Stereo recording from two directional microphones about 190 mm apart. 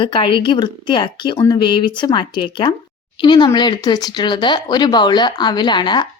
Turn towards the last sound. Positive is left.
turn(degrees=25)  # may be behind; listen again after turning